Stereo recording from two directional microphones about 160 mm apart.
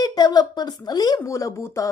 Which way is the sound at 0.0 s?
25° left (ahead or behind).